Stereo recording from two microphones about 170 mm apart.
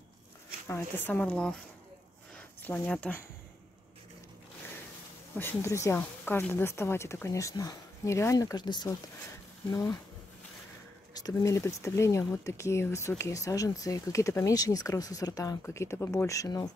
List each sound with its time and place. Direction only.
0.7 s speech: 15° left (ahead or behind)
2.3 s a sound: 10° left (ahead or behind)
5.4 s speech: 15° left (ahead or behind)
11.1 s speech: 20° left (ahead or behind)